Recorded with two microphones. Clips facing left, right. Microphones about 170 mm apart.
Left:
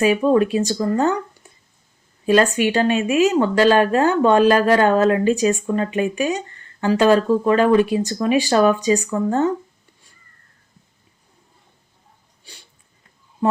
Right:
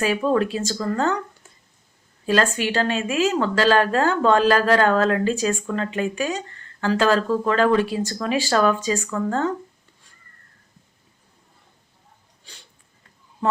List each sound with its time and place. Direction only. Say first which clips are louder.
0.0 s speech: left 5 dB; 15° left (ahead or behind)
2.2 s speech: left 5 dB; 15° left (ahead or behind)